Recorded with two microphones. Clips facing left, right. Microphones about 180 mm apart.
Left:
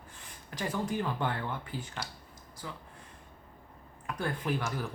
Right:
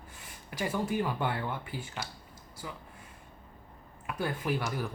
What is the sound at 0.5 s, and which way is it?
Speech, 10° right (ahead or behind).